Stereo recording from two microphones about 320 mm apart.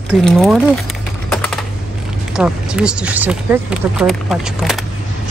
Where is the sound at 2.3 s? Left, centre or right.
Centre.